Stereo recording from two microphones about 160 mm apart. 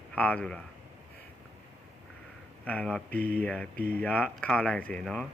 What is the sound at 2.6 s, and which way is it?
Speech, 5° left (ahead or behind).